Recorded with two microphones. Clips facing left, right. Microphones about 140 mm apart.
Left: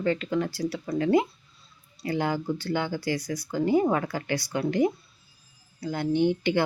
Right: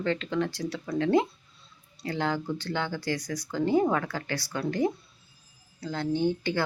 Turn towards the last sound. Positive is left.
turn(degrees=20)  # may be behind; listen again after turning